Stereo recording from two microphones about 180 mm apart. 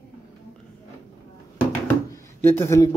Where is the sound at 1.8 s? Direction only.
15° left (ahead or behind).